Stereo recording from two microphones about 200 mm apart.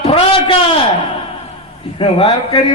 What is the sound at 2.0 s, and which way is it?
Speech, 25° left (ahead or behind).